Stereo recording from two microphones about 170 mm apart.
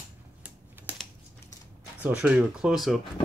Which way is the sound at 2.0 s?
10° right (ahead or behind).